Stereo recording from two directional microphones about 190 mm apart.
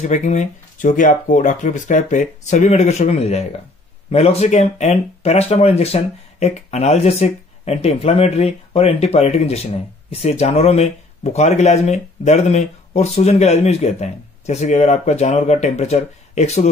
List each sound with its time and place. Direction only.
0.0 s speech: 40° left (ahead or behind)